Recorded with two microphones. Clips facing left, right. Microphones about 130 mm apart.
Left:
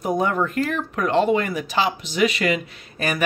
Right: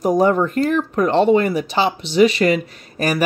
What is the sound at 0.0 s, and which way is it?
Speech, 35° right (ahead or behind).